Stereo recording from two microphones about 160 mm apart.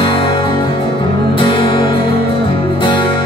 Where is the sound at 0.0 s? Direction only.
35° left (ahead or behind).